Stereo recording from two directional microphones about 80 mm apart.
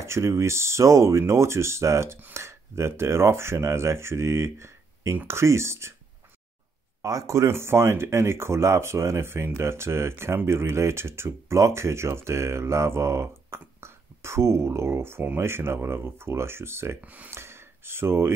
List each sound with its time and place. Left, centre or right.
0.0 s speech: right
7.0 s speech: right
17.0 s speech: centre
17.3 s a sound: right